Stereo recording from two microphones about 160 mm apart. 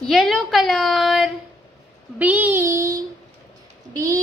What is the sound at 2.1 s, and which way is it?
Child singing, 10° right (ahead or behind).